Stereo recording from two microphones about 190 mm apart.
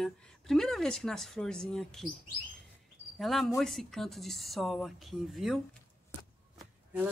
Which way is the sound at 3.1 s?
Centre (ahead or behind).